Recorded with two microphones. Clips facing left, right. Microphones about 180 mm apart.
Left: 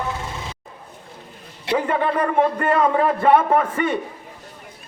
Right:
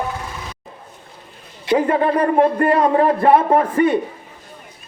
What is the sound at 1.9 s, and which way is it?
A man's voice, 35° right (ahead or behind).